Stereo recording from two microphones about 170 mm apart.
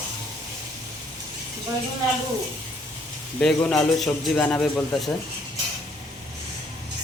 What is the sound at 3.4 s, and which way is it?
A man's voice, centre (ahead or behind).